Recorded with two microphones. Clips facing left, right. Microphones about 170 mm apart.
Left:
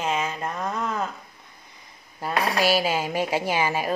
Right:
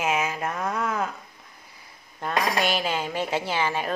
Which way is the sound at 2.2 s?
5° left (ahead or behind).